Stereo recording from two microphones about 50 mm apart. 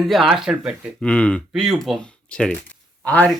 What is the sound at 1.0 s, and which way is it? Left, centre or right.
Speech, left.